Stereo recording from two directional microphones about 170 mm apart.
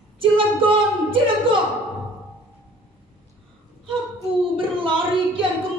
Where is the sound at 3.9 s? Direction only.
30° right (ahead or behind).